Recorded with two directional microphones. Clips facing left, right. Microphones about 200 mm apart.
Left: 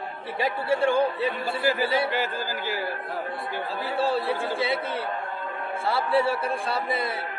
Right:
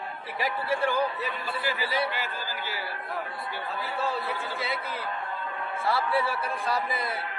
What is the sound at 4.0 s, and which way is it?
Speech, 30° left (ahead or behind).